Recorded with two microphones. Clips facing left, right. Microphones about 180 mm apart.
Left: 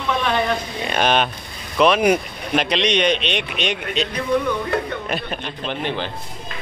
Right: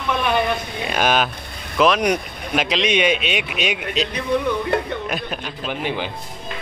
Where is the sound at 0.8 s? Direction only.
5° right (ahead or behind).